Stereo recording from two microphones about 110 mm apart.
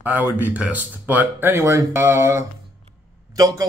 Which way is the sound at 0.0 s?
15° right (ahead or behind).